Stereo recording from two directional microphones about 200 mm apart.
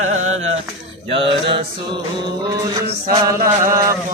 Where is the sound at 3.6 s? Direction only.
15° right (ahead or behind).